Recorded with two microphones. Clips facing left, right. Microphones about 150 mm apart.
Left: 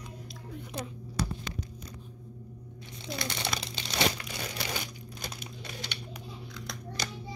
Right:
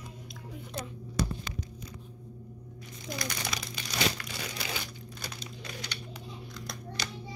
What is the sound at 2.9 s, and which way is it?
Crumpling, 30° left (ahead or behind).